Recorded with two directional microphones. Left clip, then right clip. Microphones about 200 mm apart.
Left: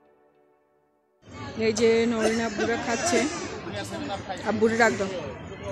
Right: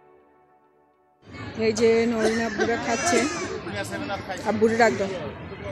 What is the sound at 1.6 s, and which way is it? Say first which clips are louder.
Speech: right 1 dB; centre (ahead or behind).